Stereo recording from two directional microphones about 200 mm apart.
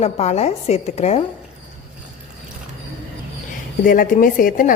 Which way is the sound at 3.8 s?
45° left (ahead or behind).